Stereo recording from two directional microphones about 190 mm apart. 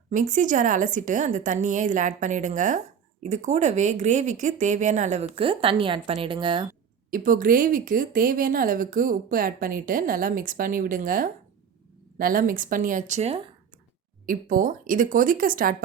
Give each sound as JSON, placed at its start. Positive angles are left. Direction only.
{"t": 0.1, "sound": "speech", "side_deg": -40}
{"t": 5.3, "sound": "a woman's voice", "side_deg": -30}
{"t": 7.1, "sound": "speech", "side_deg": -45}
{"t": 14.3, "sound": "speech", "side_deg": -45}